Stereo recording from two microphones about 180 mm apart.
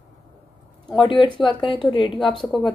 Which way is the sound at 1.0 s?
25° left (ahead or behind).